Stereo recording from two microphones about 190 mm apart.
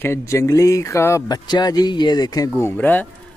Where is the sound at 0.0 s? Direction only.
15° left (ahead or behind).